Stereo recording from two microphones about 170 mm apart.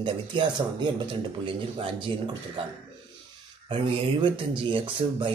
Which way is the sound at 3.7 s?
30° right (ahead or behind).